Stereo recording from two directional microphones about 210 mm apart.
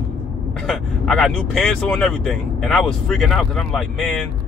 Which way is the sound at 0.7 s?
Centre (ahead or behind).